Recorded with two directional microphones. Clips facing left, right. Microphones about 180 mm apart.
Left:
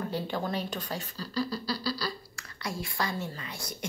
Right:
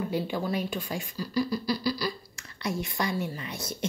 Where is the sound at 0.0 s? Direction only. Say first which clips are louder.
Right 3 dB; 10° right (ahead or behind).